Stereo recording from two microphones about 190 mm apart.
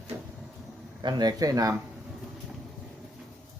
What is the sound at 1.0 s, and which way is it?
Speech, 20° right (ahead or behind).